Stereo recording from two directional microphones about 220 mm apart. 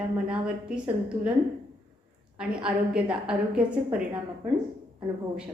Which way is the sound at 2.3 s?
5° right (ahead or behind).